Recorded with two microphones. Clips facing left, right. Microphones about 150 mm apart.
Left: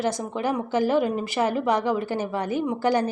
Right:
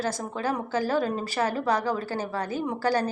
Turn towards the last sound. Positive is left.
turn(degrees=20)  # may be behind; listen again after turning